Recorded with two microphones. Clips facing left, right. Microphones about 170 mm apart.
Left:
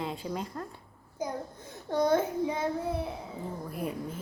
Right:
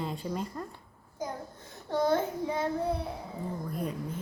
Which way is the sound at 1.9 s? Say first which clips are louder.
Left 1 dB; 15° left (ahead or behind).